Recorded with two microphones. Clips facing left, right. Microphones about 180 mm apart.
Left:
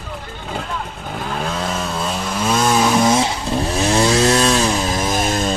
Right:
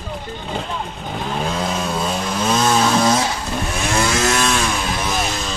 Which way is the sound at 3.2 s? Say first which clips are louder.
Left 3 dB; 35° left (ahead or behind).